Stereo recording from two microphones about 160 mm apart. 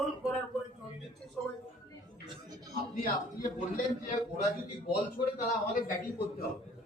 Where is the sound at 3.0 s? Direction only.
60° left (ahead or behind).